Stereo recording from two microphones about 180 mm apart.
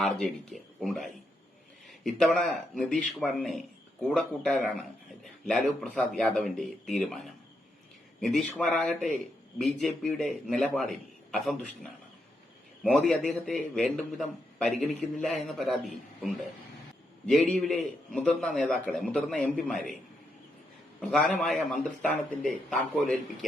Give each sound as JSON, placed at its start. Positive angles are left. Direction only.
{"t": 0.0, "sound": "a man's voice", "side_deg": 0}
{"t": 21.2, "sound": "a man's voice", "side_deg": 0}